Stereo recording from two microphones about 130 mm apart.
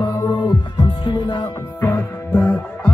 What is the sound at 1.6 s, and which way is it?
Music, 15° left (ahead or behind).